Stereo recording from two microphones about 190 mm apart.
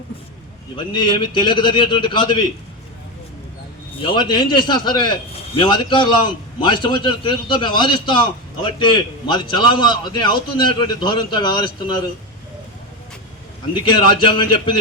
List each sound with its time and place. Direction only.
0.8 s a man's voice: 25° left (ahead or behind)
4.0 s a man's voice: 25° left (ahead or behind)
13.9 s a man's voice: 25° left (ahead or behind)